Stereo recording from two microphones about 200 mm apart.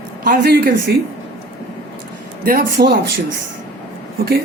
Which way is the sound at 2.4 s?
45° right (ahead or behind).